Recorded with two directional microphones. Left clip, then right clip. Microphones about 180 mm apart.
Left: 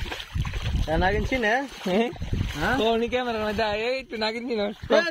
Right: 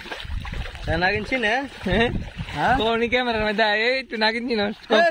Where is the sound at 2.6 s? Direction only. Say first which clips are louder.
Right 3 dB; 25° right (ahead or behind).